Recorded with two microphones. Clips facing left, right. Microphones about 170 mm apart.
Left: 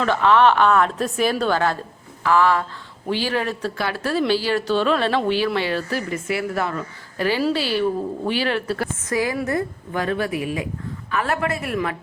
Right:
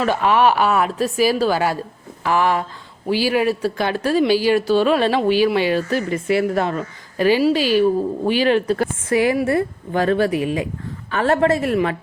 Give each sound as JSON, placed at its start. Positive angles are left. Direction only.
{"t": 0.0, "sound": "speech", "side_deg": -15}
{"t": 9.6, "sound": "a woman's voice", "side_deg": -30}